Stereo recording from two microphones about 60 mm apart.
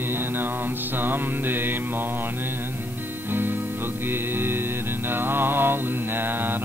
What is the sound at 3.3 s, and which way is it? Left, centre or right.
Mantra, right.